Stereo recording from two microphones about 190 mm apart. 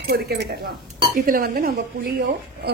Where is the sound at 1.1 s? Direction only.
50° right (ahead or behind).